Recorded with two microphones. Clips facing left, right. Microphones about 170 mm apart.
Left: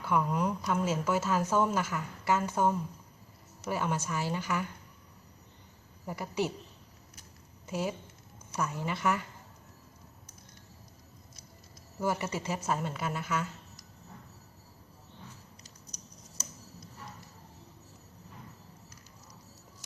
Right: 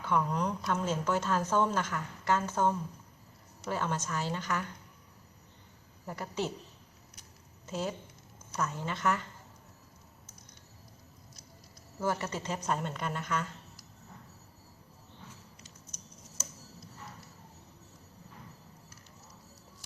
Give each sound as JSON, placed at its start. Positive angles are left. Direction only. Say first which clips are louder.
{"t": 0.0, "sound": "speech", "louder": "left 1 dB", "side_deg": 10}
{"t": 6.1, "sound": "speech", "louder": "left 3 dB", "side_deg": 10}
{"t": 7.7, "sound": "speech", "louder": "left 2 dB", "side_deg": 10}
{"t": 11.9, "sound": "speech", "louder": "left 1 dB", "side_deg": 10}
{"t": 15.6, "sound": "a sound", "louder": "even", "side_deg": 35}